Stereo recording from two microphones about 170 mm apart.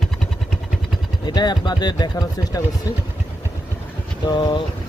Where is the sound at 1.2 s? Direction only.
25° left (ahead or behind).